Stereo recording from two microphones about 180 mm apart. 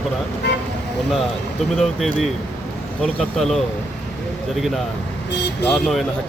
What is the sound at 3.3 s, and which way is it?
Speech, centre (ahead or behind).